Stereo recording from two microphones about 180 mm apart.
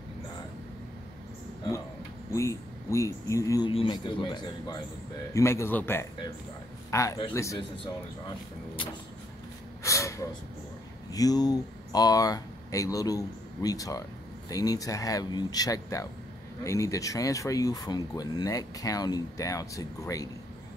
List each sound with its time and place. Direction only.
2.3 s speech: 15° left (ahead or behind)
7.8 s speech: 30° left (ahead or behind)
9.8 s gasp: 15° left (ahead or behind)
11.1 s speech: 20° left (ahead or behind)